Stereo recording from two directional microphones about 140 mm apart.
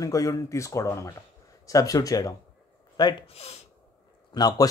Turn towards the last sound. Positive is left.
turn(degrees=30)  # may be behind; listen again after turning